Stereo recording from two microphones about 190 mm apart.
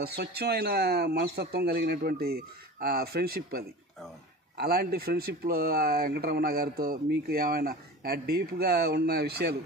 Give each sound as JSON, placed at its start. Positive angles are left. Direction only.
{"t": 0.0, "sound": "speech", "side_deg": -55}